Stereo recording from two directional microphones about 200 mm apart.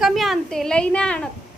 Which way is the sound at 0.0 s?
Centre (ahead or behind).